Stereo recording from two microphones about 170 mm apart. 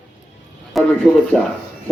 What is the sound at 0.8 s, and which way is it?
Speech, centre (ahead or behind).